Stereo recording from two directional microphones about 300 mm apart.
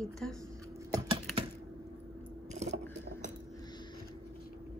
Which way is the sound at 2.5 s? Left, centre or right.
Right.